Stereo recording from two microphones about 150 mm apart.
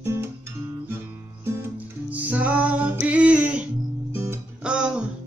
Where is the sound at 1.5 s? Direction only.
10° right (ahead or behind).